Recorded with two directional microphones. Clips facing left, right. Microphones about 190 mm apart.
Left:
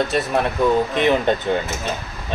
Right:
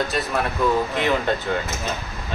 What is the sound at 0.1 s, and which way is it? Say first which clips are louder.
Speech: left 4 dB; 25° left (ahead or behind).